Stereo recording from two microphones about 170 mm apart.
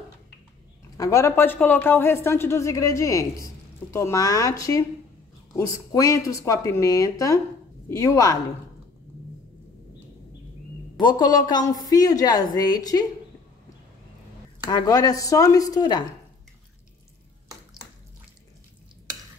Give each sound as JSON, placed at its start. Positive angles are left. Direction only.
{"t": 0.9, "sound": "a woman's voice", "side_deg": 20}
{"t": 11.0, "sound": "speech", "side_deg": 25}
{"t": 14.7, "sound": "speech", "side_deg": 20}